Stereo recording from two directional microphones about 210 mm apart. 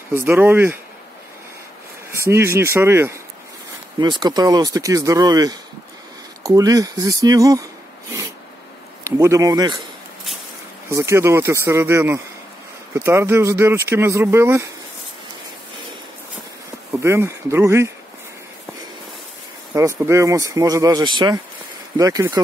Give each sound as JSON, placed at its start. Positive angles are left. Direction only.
{"t": 0.1, "sound": "speech", "side_deg": -10}
{"t": 2.2, "sound": "speech", "side_deg": -10}
{"t": 9.0, "sound": "speech", "side_deg": -15}
{"t": 10.9, "sound": "speech", "side_deg": -15}
{"t": 17.0, "sound": "speech", "side_deg": -10}
{"t": 19.7, "sound": "speech", "side_deg": -10}